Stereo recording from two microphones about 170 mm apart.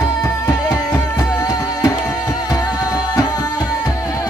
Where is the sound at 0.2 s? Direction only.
20° left (ahead or behind).